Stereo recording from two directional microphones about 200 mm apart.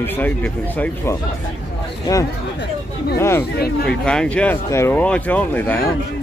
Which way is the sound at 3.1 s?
15° left (ahead or behind).